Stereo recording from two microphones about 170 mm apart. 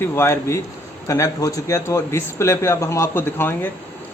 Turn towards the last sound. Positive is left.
turn(degrees=10)  # may be behind; listen again after turning